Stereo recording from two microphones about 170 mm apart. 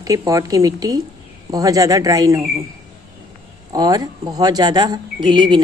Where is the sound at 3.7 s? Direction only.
25° right (ahead or behind).